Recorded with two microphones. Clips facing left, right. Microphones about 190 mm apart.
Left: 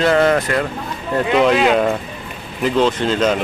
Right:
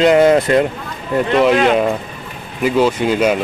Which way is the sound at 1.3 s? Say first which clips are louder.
Right 1 dB; centre (ahead or behind).